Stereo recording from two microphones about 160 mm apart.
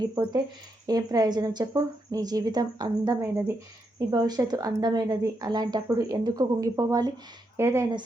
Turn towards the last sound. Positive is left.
turn(degrees=-15)  # may be behind; listen again after turning